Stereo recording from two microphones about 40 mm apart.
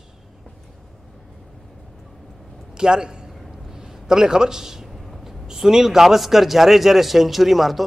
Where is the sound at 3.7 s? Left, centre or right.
Centre.